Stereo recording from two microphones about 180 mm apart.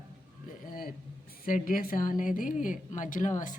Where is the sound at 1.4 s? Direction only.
50° left (ahead or behind).